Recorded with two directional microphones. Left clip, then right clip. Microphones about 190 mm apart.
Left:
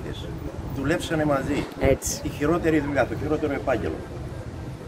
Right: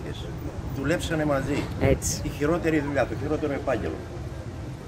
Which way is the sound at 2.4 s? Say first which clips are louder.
Left 2 dB; 15° right (ahead or behind).